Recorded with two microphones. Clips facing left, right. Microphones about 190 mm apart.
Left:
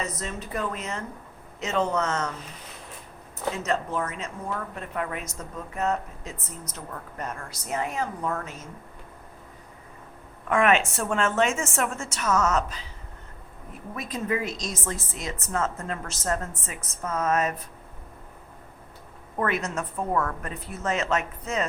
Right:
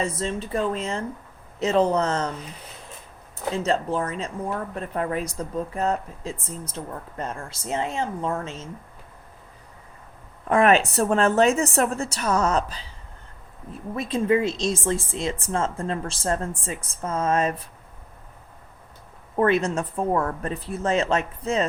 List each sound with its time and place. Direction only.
0.0 s a woman's voice: 30° right (ahead or behind)
3.5 s speech: 30° right (ahead or behind)
10.5 s speech: 35° right (ahead or behind)
13.9 s a woman's voice: 30° right (ahead or behind)
19.4 s a woman's voice: 30° right (ahead or behind)